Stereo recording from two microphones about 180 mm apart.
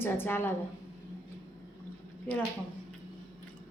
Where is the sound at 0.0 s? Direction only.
10° left (ahead or behind).